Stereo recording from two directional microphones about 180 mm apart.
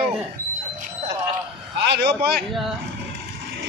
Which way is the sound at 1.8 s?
70° right (ahead or behind).